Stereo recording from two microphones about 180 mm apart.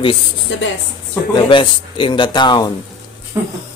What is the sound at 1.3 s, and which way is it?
Speech, 25° left (ahead or behind).